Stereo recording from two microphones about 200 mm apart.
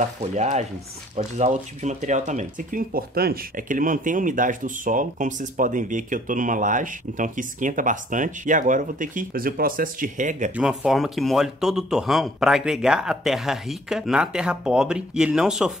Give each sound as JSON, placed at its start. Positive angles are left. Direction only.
{"t": 0.4, "sound": "speech", "side_deg": -35}
{"t": 10.5, "sound": "speech", "side_deg": -5}